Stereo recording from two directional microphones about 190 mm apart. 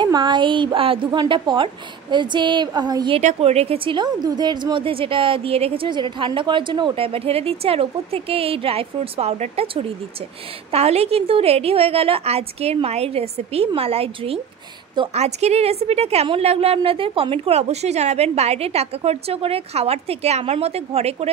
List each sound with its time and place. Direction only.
0.0 s a woman's voice: 25° right (ahead or behind)
3.2 s a woman's voice: 35° right (ahead or behind)